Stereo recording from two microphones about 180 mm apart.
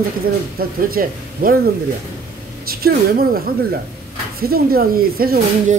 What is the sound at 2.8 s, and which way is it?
Speech, 55° right (ahead or behind).